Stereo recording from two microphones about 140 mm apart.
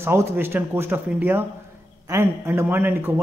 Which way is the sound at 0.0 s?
20° right (ahead or behind).